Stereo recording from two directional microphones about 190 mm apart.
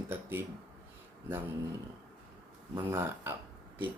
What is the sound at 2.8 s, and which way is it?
Speech, 10° right (ahead or behind).